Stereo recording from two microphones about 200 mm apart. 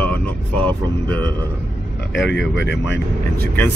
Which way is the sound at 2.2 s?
60° left (ahead or behind).